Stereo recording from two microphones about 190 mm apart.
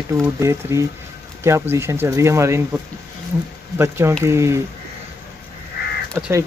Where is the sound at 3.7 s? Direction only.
15° right (ahead or behind).